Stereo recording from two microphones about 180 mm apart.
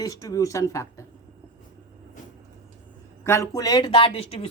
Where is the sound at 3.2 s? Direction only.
15° left (ahead or behind); by 4.5 s 30° left (ahead or behind).